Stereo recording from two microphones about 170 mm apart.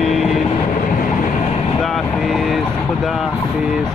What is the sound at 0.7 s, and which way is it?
Train, 55° left (ahead or behind).